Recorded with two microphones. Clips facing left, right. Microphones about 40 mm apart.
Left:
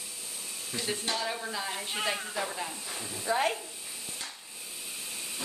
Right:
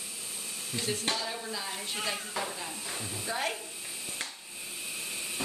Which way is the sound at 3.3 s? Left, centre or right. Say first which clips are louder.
Left 5 dB; left.